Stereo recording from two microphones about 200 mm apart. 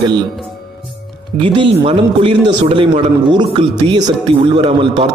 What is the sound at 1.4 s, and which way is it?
A man's voice, 25° right (ahead or behind).